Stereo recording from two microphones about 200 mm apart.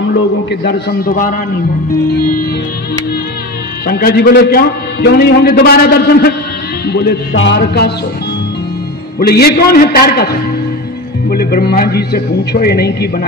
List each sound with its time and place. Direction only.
0.5 s a man's voice: 55° left (ahead or behind)
3.8 s a man's voice: 50° left (ahead or behind)
6.9 s music: 55° left (ahead or behind)
9.2 s a man's voice: 50° left (ahead or behind)